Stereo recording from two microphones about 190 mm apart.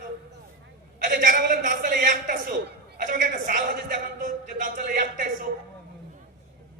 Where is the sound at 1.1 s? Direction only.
45° right (ahead or behind).